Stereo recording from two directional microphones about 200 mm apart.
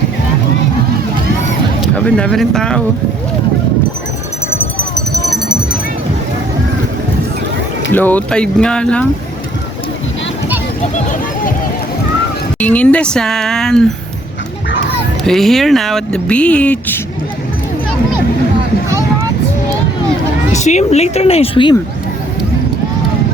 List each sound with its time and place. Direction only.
2.0 s speech: 5° left (ahead or behind)
7.9 s speech: 10° left (ahead or behind)
12.5 s speech: 5° left (ahead or behind)
15.2 s speech: centre (ahead or behind)
18.9 s vehicle: 15° right (ahead or behind)
20.5 s speech: 35° left (ahead or behind)